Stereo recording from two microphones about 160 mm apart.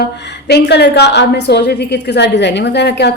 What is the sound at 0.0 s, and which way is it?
A woman's voice, 90° left.